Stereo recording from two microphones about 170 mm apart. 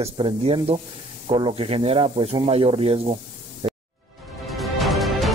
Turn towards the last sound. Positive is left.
turn(degrees=0)  # may be behind; listen again after turning